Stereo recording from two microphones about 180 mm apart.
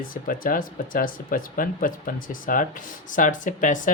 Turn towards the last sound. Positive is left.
turn(degrees=45)  # may be behind; listen again after turning